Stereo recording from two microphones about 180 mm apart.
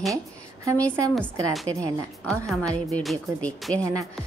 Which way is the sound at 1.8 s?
20° right (ahead or behind).